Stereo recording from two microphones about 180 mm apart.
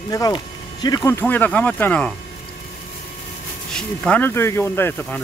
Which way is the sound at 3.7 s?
5° left (ahead or behind).